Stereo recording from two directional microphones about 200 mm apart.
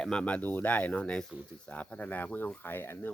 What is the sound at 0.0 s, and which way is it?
A man's voice, 5° left (ahead or behind).